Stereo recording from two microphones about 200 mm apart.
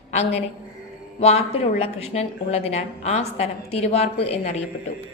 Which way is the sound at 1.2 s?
30° left (ahead or behind).